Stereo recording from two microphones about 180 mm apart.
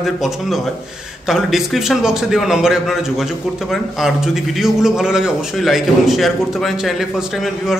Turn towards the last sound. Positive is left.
turn(degrees=0)  # may be behind; listen again after turning